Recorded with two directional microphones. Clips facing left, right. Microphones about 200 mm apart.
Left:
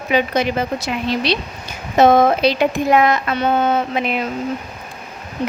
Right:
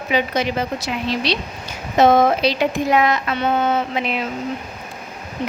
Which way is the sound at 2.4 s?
50° left (ahead or behind).